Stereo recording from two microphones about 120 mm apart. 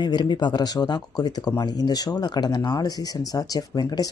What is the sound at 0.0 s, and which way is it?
Speech, 40° left (ahead or behind).